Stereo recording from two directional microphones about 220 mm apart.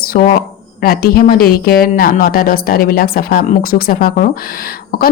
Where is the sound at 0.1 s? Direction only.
40° left (ahead or behind).